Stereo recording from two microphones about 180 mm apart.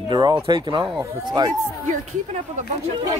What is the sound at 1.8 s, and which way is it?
Speech, 40° right (ahead or behind).